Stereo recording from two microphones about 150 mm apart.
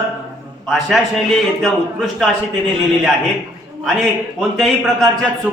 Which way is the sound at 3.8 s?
Centre (ahead or behind).